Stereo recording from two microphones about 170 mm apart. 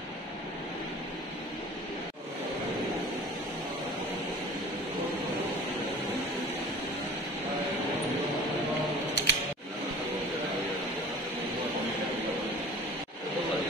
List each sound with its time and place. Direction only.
9.1 s scissors: 75° left (ahead or behind)